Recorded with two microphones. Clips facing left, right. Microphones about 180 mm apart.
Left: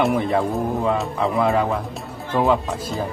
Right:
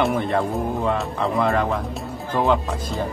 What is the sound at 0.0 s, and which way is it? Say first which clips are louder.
Speech: left 2 dB; centre (ahead or behind).